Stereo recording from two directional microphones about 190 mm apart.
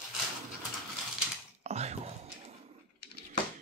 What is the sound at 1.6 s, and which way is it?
Whispering, 35° right (ahead or behind).